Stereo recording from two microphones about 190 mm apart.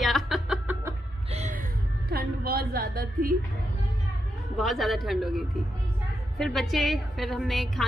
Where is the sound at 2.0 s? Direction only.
55° right (ahead or behind).